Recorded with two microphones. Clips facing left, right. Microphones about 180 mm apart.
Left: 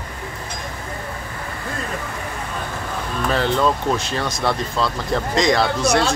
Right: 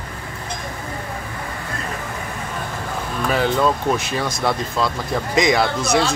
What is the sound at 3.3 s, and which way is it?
Speech, 10° right (ahead or behind).